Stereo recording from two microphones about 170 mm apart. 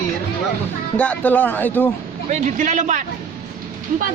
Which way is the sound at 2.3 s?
45° right (ahead or behind).